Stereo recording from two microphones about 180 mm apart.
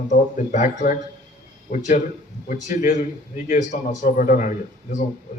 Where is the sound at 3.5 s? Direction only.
45° left (ahead or behind).